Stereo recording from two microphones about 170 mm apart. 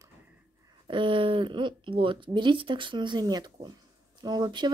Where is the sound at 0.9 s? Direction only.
30° right (ahead or behind).